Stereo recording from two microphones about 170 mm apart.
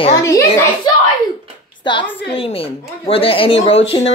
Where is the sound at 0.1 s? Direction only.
20° left (ahead or behind).